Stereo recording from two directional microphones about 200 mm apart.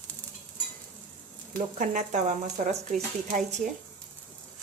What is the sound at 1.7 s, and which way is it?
Speech, 40° right (ahead or behind).